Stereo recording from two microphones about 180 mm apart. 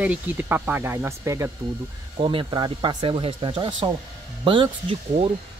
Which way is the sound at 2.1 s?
30° right (ahead or behind).